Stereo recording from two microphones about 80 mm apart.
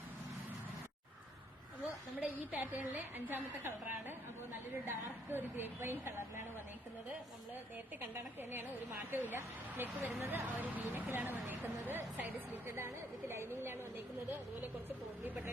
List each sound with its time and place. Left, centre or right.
2.5 s a woman's voice: right
8.1 s a woman's voice: right